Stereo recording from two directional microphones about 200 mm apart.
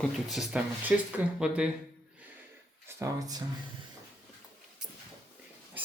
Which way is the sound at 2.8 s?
15° right (ahead or behind).